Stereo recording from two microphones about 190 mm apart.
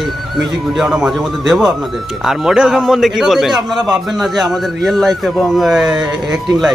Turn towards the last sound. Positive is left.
turn(degrees=0)  # may be behind; listen again after turning